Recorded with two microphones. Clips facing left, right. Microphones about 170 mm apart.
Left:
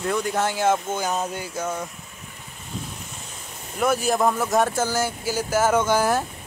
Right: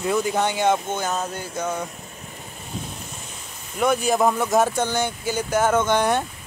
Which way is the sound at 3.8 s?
5° left (ahead or behind).